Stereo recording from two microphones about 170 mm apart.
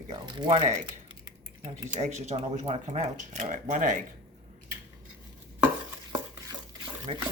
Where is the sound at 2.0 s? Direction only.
45° right (ahead or behind).